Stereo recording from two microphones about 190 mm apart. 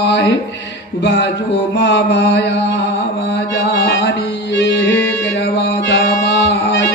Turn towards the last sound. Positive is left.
turn(degrees=70)  # may be behind; listen again after turning